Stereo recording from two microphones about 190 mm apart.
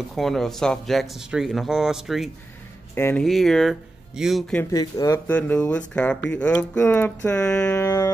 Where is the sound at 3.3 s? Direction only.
Centre (ahead or behind).